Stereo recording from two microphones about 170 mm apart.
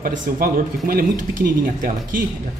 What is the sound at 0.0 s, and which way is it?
Speech, 55° right (ahead or behind).